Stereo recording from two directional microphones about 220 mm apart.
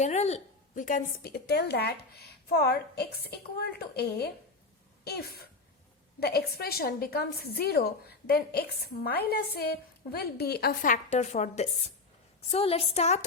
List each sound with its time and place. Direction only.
0.0 s a woman's voice: 30° left (ahead or behind)